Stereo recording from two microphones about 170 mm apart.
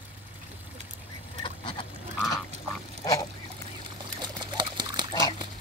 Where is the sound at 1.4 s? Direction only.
30° left (ahead or behind).